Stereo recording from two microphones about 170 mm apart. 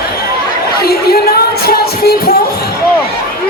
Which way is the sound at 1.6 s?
65° left (ahead or behind).